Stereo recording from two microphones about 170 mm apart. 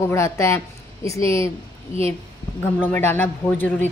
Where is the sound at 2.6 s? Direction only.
10° left (ahead or behind).